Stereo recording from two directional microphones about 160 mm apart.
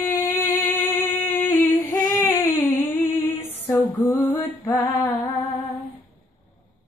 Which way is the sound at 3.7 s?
15° left (ahead or behind).